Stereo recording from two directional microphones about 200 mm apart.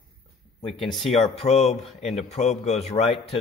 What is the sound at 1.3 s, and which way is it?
A man's voice, 35° left (ahead or behind).